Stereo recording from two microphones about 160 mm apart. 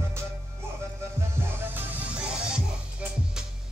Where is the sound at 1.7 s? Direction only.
10° right (ahead or behind).